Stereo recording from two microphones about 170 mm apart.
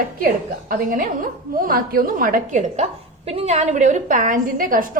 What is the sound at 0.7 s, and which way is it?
A woman's voice, 55° right (ahead or behind).